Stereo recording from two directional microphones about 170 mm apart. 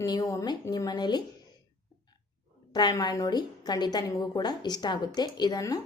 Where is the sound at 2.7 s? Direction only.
25° left (ahead or behind).